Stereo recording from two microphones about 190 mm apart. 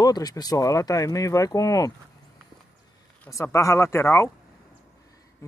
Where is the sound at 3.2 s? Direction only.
15° left (ahead or behind).